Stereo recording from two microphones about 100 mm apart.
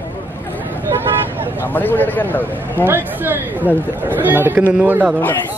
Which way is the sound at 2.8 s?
20° right (ahead or behind).